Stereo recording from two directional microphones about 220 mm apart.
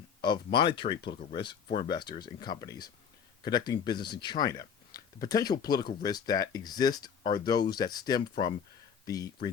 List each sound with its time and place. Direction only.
0.2 s speech: 20° left (ahead or behind)